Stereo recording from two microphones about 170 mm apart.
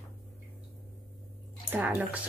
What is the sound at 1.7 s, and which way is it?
Speech, 10° right (ahead or behind).